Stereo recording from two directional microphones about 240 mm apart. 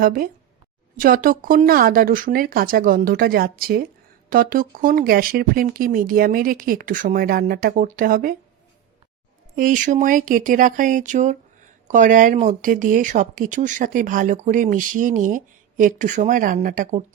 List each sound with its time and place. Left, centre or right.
0.0 s speech: right
9.6 s speech: right